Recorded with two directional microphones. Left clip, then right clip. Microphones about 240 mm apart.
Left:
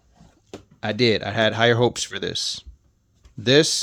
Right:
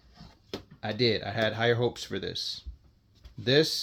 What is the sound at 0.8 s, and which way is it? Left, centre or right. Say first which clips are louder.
Speech: left 7 dB; left.